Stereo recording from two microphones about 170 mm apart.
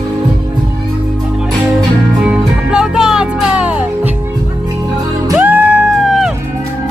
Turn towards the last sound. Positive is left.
turn(degrees=0)  # may be behind; listen again after turning